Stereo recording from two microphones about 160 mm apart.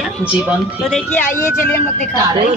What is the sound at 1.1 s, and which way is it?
Speech, 15° left (ahead or behind).